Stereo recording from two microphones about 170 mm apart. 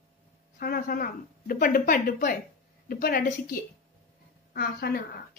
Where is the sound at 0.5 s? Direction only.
60° left (ahead or behind).